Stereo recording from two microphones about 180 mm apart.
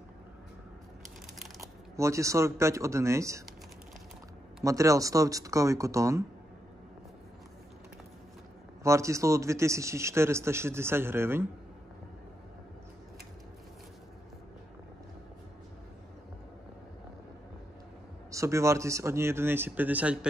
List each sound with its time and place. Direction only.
1.6 s speech: 15° right (ahead or behind)
4.6 s a man's voice: 15° right (ahead or behind)
8.8 s a man's voice: 15° right (ahead or behind)
18.3 s a man's voice: 15° right (ahead or behind)